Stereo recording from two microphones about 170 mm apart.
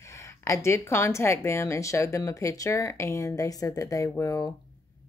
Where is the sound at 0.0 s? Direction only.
15° left (ahead or behind).